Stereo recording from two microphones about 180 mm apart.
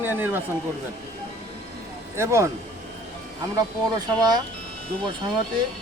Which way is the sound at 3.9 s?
20° right (ahead or behind).